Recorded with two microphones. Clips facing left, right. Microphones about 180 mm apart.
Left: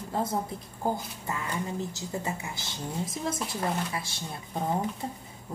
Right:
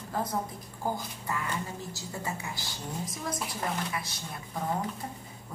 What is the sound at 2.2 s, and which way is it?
Speech, 25° left (ahead or behind).